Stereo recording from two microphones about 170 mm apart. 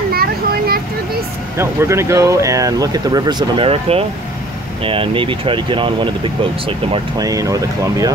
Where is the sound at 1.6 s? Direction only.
15° right (ahead or behind).